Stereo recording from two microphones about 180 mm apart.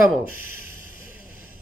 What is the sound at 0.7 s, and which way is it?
Vehicle, 50° left (ahead or behind).